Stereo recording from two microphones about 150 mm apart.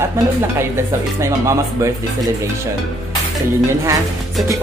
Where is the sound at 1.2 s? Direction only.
20° right (ahead or behind).